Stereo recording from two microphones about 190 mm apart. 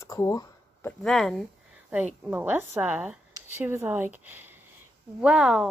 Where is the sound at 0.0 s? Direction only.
15° left (ahead or behind).